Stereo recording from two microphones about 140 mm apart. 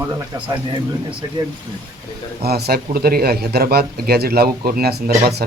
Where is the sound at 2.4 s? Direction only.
90° right.